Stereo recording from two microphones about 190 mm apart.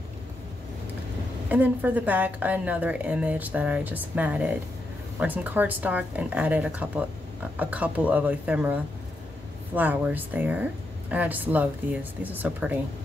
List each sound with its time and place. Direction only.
1.5 s a woman's voice: 10° right (ahead or behind)